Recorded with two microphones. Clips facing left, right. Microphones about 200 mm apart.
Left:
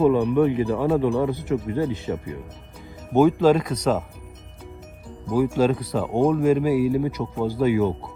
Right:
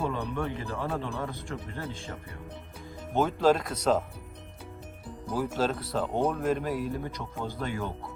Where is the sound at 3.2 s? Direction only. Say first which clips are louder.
Left 8 dB; 5° left (ahead or behind).